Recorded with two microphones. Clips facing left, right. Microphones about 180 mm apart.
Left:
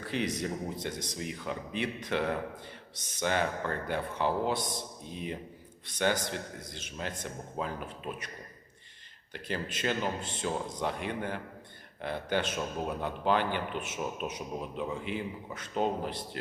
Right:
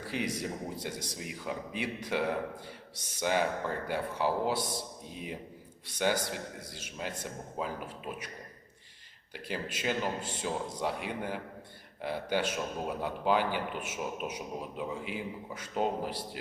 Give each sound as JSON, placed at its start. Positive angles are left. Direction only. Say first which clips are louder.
{"t": 0.0, "sound": "a man's voice", "louder": "left 2 dB", "side_deg": -10}
{"t": 6.0, "sound": "a man's voice", "louder": "even", "side_deg": -10}
{"t": 9.3, "sound": "a man's voice", "louder": "left 1 dB", "side_deg": -10}